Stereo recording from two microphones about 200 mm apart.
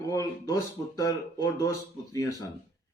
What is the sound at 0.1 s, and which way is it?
A man's voice, 15° left (ahead or behind).